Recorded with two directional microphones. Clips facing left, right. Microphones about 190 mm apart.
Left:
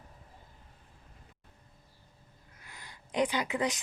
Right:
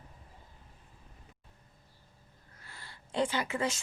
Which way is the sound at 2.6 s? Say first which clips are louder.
Even; 15° left (ahead or behind).